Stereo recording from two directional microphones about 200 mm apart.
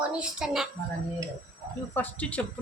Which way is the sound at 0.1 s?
5° right (ahead or behind).